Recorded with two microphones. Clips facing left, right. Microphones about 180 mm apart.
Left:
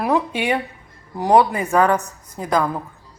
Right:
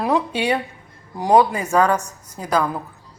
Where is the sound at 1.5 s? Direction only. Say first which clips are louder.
Left 1 dB; 15° left (ahead or behind).